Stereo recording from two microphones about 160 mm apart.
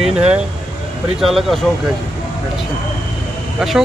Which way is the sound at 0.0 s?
5° right (ahead or behind).